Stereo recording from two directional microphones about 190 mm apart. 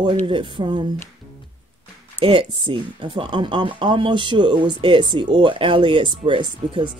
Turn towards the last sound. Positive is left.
turn(degrees=-25)  # may be behind; listen again after turning